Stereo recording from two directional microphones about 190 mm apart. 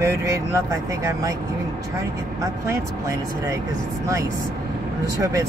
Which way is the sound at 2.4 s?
15° right (ahead or behind).